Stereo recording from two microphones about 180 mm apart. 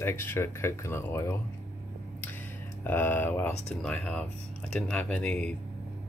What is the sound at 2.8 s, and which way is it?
Speech, 10° left (ahead or behind).